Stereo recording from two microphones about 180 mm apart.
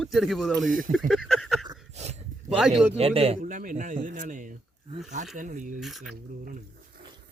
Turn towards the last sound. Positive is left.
turn(degrees=0)  # may be behind; listen again after turning